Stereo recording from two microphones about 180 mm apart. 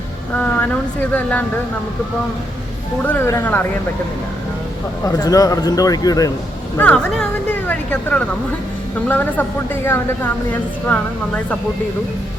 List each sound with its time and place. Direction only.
1.1 s speech: 10° left (ahead or behind)
3.0 s speech: 10° left (ahead or behind)
5.0 s a man's voice: 20° left (ahead or behind)
6.7 s speech: 5° left (ahead or behind)